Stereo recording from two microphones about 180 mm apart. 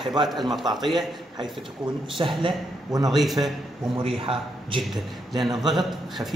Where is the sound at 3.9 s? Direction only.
30° right (ahead or behind).